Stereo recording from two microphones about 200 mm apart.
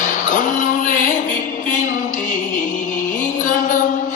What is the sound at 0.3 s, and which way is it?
Music, 40° left (ahead or behind).